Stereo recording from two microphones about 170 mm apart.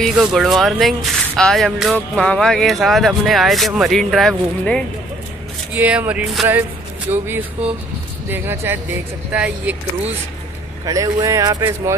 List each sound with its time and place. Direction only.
0.0 s speech: 5° right (ahead or behind)
5.8 s speech: 10° right (ahead or behind)
10.9 s speech: 20° right (ahead or behind)